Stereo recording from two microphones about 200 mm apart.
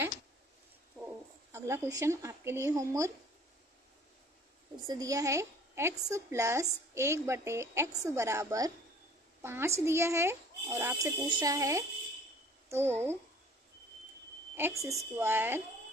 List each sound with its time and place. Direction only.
1.5 s a woman's voice: 15° right (ahead or behind)
4.8 s a woman's voice: 20° right (ahead or behind)
14.5 s a woman's voice: 15° right (ahead or behind)